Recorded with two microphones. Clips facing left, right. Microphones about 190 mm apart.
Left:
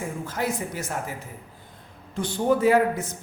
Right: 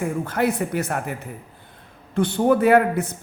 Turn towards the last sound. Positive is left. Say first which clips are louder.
# right 3 dB
turn(degrees=-60)  # may be behind; listen again after turning